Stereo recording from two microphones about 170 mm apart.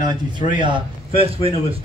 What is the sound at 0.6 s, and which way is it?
Speech, 30° right (ahead or behind).